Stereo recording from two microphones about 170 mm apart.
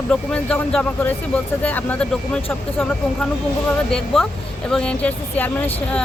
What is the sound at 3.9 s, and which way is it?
Speech, centre (ahead or behind).